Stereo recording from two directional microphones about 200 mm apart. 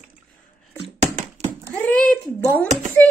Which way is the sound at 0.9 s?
35° right (ahead or behind).